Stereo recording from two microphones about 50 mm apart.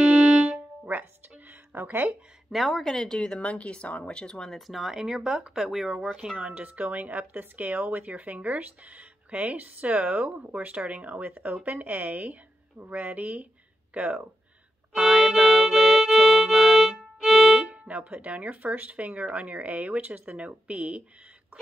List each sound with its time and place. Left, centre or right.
0.0 s music: centre
0.5 s music: right
1.5 s a sound: right
2.5 s a woman's voice: centre
4.6 s speech: centre
6.3 s speech: right
15.0 s speech: centre
15.3 s music: centre
17.6 s speech: right